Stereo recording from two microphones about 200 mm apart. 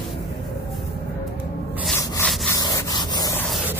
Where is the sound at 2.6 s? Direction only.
20° left (ahead or behind).